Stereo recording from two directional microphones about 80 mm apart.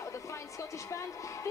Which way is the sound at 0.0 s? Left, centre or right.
Left.